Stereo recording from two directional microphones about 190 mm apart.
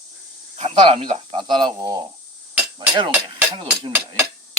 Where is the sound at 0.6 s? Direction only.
30° right (ahead or behind).